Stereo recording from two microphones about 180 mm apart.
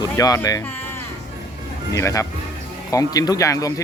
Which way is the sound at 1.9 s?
15° left (ahead or behind).